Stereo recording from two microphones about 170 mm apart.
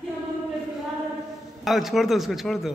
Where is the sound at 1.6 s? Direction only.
Centre (ahead or behind).